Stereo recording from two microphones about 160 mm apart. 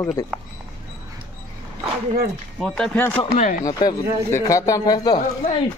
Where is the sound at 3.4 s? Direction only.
55° left (ahead or behind).